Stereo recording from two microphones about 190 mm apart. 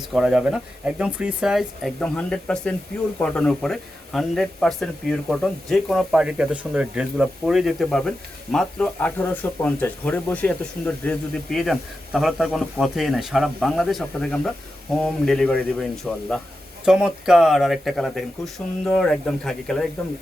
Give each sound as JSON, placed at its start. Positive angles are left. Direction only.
{"t": 0.1, "sound": "speech", "side_deg": -5}